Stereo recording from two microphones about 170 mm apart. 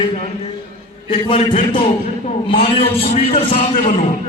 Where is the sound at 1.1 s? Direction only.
35° left (ahead or behind).